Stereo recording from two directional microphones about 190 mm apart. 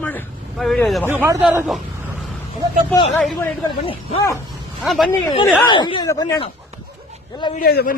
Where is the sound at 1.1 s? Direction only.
10° right (ahead or behind).